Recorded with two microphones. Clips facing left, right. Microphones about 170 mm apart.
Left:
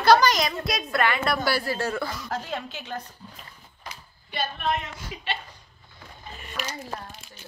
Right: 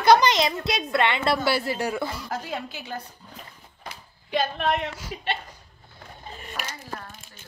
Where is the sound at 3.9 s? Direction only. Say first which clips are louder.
Right 11 dB; 85° right.